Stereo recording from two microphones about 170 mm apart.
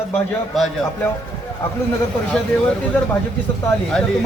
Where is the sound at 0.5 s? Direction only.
Centre (ahead or behind).